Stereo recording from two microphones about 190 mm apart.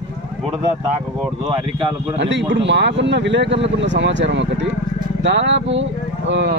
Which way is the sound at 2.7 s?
65° right (ahead or behind).